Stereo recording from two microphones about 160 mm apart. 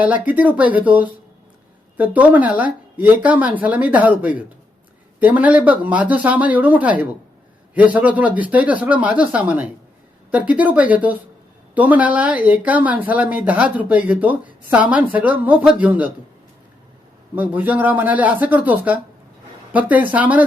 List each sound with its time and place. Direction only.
0.0 s speech: 10° right (ahead or behind)
17.3 s speech: 10° right (ahead or behind)